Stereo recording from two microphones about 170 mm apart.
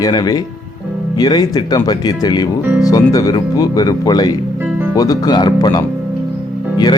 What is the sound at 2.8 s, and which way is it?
Speech, 20° left (ahead or behind).